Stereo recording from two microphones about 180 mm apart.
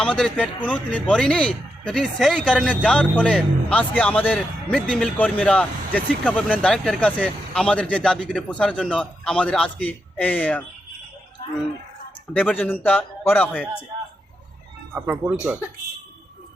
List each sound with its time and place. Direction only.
0.0 s speech: 5° left (ahead or behind)
12.3 s speech: 5° left (ahead or behind)
14.9 s speech: 10° right (ahead or behind)